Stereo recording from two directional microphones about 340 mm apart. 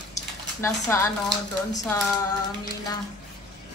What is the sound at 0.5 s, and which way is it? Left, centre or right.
Speech, centre.